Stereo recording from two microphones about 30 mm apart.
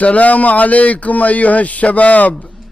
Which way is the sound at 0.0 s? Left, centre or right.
Left.